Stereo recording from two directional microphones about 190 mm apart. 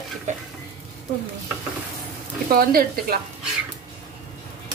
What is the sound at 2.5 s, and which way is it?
Frying, 50° right (ahead or behind).